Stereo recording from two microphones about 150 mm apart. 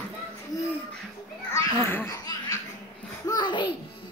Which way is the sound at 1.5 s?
15° left (ahead or behind).